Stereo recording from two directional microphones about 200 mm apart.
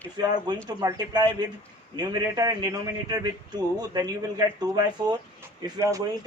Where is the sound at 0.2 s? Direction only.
20° right (ahead or behind).